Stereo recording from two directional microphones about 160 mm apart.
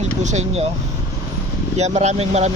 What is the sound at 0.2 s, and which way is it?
Speech, 45° right (ahead or behind).